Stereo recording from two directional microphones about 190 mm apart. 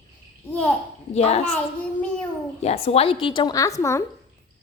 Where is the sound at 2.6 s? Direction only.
35° left (ahead or behind); by 4.0 s 15° left (ahead or behind).